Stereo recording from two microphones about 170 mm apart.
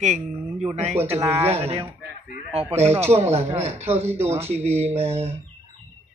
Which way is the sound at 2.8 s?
15° right (ahead or behind).